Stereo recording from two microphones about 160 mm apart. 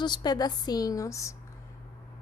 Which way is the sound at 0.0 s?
25° left (ahead or behind).